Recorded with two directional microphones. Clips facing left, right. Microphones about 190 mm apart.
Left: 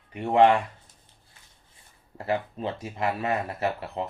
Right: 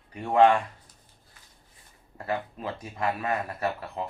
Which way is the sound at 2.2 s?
25° left (ahead or behind).